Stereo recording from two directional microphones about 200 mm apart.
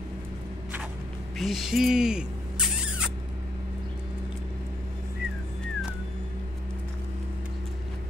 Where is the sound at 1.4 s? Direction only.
Centre (ahead or behind).